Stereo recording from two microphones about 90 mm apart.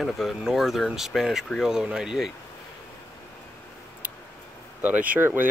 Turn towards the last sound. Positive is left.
turn(degrees=-20)  # may be behind; listen again after turning